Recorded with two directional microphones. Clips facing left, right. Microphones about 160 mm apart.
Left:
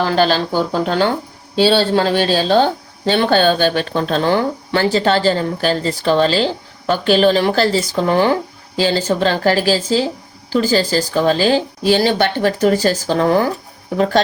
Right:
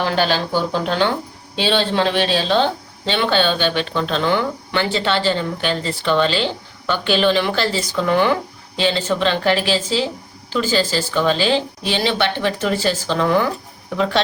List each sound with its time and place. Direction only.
0.0 s speech: 40° left (ahead or behind)